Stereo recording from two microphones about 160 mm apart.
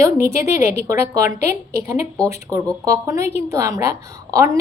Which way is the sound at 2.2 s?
20° right (ahead or behind).